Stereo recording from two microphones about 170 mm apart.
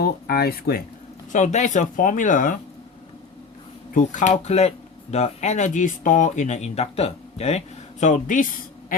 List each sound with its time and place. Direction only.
0.0 s speech: 65° left (ahead or behind)
1.3 s speech: 45° left (ahead or behind)
3.9 s speech: 45° left (ahead or behind)
8.9 s a sound: 55° left (ahead or behind)